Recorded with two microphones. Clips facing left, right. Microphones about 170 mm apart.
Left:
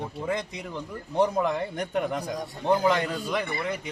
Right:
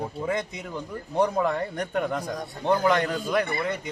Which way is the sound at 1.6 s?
10° left (ahead or behind).